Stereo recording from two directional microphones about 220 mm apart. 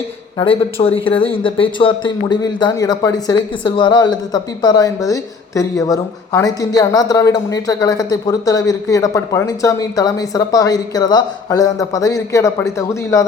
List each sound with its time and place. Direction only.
0.3 s speech: 25° left (ahead or behind)